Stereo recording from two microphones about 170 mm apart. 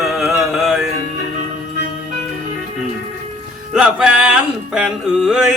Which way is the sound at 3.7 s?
5° right (ahead or behind).